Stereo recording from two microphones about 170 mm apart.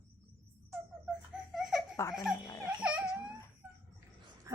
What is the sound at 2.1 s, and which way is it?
Speech, centre (ahead or behind).